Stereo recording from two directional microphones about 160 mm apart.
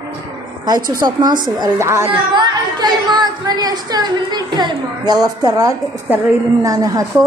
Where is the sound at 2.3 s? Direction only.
25° right (ahead or behind).